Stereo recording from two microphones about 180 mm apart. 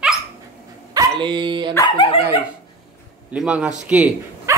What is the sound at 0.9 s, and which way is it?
Speech, 25° right (ahead or behind).